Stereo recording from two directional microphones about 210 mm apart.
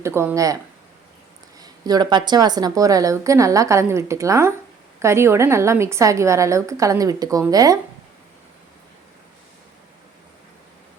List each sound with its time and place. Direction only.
0.0 s a woman's voice: 10° right (ahead or behind)